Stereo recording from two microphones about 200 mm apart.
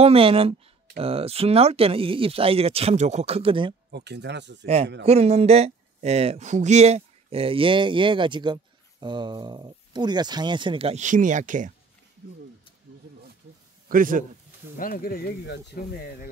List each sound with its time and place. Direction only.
0.0 s speech: 30° right (ahead or behind)
3.9 s speech: 55° right (ahead or behind)
5.0 s speech: 30° right (ahead or behind)
13.8 s a man's voice: 45° right (ahead or behind)
14.8 s speech: 45° left (ahead or behind)